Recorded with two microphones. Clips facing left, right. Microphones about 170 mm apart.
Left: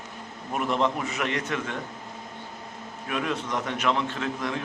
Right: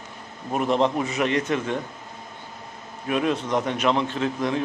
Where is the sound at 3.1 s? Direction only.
25° right (ahead or behind).